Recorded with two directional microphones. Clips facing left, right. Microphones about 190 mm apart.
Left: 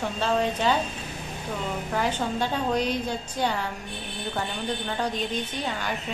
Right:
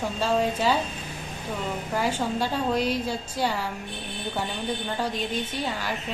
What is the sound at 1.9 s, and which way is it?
A woman's voice, 5° right (ahead or behind).